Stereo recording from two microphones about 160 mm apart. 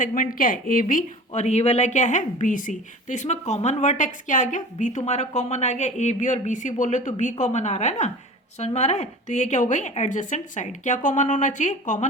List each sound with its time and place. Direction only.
0.0 s speech: 55° left (ahead or behind)